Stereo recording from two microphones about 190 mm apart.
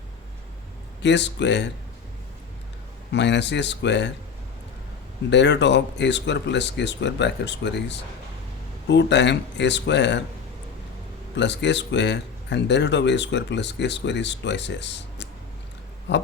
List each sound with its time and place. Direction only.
1.0 s speech: 65° left (ahead or behind)
3.1 s speech: 65° left (ahead or behind)
5.3 s speech: 65° left (ahead or behind)
11.3 s speech: 65° left (ahead or behind)